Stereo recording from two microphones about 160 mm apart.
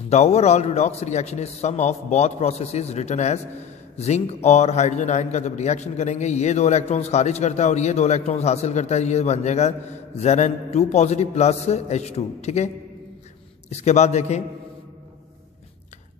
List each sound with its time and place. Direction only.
0.1 s a man's voice: 40° left (ahead or behind)